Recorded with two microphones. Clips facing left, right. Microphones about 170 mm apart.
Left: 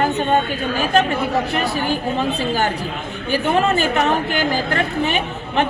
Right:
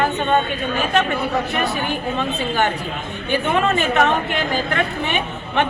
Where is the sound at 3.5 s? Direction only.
35° left (ahead or behind).